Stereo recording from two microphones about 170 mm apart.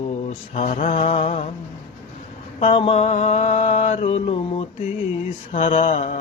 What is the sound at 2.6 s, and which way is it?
Mantra, 35° left (ahead or behind).